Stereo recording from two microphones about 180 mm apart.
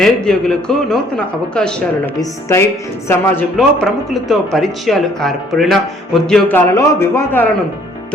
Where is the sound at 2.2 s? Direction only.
15° left (ahead or behind).